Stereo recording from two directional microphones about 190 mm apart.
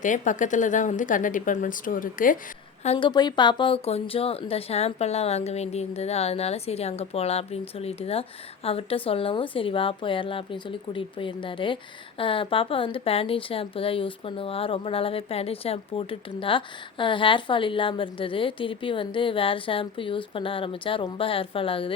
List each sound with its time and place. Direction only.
0.0 s speech: 40° left (ahead or behind)
2.8 s speech: 35° left (ahead or behind)
3.1 s speech: 20° left (ahead or behind)